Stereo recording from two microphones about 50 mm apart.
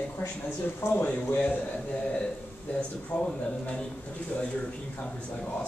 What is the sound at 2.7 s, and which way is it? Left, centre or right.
Speech, left.